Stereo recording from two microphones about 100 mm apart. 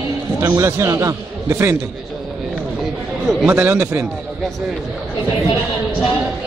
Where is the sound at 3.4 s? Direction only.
20° right (ahead or behind).